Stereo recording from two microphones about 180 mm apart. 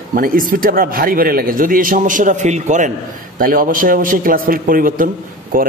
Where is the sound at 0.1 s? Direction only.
50° right (ahead or behind).